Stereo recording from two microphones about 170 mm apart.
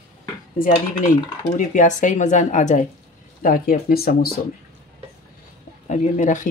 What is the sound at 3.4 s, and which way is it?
Speech, 55° left (ahead or behind).